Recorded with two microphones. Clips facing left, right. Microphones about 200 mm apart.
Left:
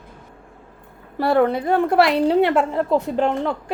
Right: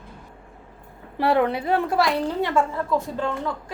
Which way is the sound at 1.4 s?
45° left (ahead or behind).